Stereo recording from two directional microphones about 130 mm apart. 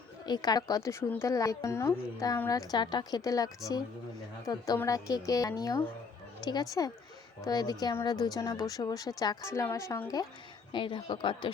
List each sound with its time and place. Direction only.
0.3 s a man's voice: 30° left (ahead or behind)
10.7 s a man's voice: 40° left (ahead or behind)